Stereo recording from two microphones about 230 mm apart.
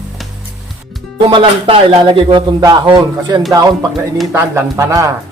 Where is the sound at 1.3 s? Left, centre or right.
Right.